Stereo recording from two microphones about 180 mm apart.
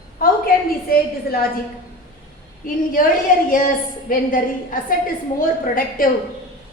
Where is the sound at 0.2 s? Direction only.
55° left (ahead or behind).